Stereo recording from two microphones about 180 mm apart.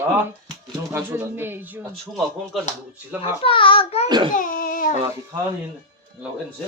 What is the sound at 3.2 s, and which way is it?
Speech, 30° left (ahead or behind).